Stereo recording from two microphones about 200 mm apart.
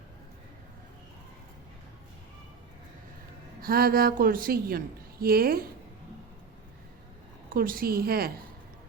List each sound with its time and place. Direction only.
3.6 s a woman's voice: 50° right (ahead or behind)
7.5 s a woman's voice: 45° right (ahead or behind)